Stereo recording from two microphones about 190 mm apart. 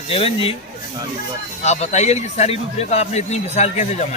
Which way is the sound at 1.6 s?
35° left (ahead or behind).